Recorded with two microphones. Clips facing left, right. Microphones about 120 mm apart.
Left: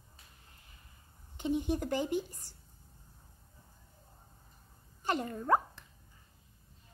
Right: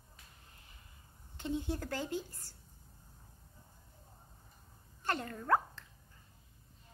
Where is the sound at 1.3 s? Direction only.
15° left (ahead or behind).